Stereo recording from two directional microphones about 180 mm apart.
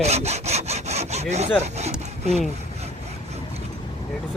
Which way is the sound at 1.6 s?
40° right (ahead or behind).